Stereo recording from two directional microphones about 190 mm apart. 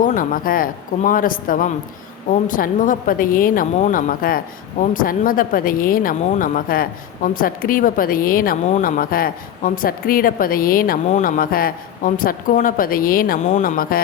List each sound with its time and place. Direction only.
0.0 s a woman's voice: 45° left (ahead or behind)